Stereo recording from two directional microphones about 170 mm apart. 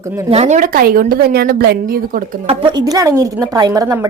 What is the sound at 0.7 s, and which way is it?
A woman's voice, 60° right (ahead or behind).